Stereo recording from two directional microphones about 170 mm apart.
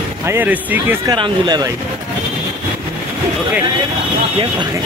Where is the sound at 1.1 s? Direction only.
25° right (ahead or behind).